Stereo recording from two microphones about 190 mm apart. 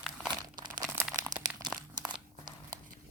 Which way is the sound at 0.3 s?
25° right (ahead or behind).